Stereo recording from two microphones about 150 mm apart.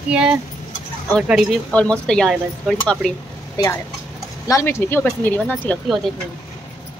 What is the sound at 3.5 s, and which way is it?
Speech, 20° left (ahead or behind).